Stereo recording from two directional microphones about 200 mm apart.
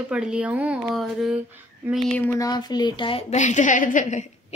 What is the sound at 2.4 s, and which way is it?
A woman's voice, 20° left (ahead or behind).